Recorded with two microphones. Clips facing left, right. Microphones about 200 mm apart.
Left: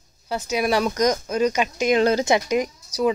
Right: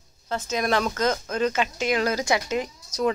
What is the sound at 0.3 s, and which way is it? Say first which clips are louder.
Speech: left 3 dB; 10° left (ahead or behind).